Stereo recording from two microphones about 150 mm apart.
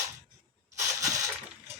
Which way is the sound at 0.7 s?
20° right (ahead or behind).